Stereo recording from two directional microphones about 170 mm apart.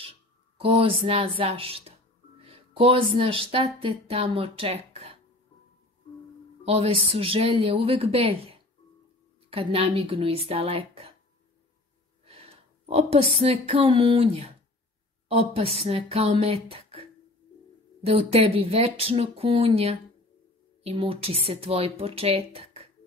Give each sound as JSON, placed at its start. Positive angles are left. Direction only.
{"t": 0.6, "sound": "speech", "side_deg": -30}
{"t": 6.6, "sound": "a woman's voice", "side_deg": -35}
{"t": 12.8, "sound": "a woman's voice", "side_deg": -35}
{"t": 18.0, "sound": "a woman's voice", "side_deg": -35}